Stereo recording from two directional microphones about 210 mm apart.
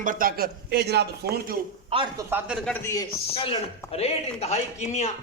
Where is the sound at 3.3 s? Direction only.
25° left (ahead or behind).